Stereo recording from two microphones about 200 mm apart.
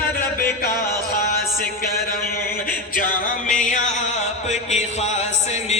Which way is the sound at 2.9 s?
40° left (ahead or behind).